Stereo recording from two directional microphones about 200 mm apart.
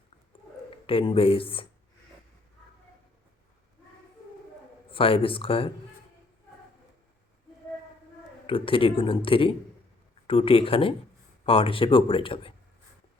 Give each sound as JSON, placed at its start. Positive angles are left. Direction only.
{"t": 0.9, "sound": "speech", "side_deg": 25}
{"t": 4.9, "sound": "speech", "side_deg": 25}
{"t": 8.4, "sound": "speech", "side_deg": 25}